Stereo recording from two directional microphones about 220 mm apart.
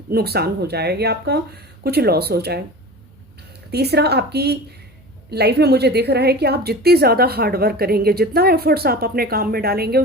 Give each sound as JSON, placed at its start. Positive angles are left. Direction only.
{"t": 0.1, "sound": "a woman's voice", "side_deg": -45}
{"t": 3.7, "sound": "a woman's voice", "side_deg": -45}